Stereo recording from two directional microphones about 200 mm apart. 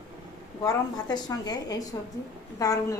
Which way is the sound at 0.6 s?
20° left (ahead or behind).